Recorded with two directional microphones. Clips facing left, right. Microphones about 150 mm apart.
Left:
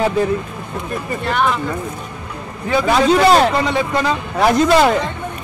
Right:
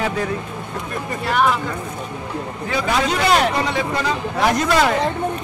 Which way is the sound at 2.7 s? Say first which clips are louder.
Left 7 dB; 30° left (ahead or behind).